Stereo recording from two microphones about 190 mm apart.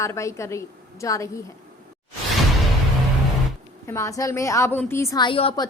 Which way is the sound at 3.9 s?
15° left (ahead or behind).